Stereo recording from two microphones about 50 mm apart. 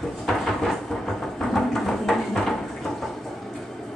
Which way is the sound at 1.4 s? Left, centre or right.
Centre.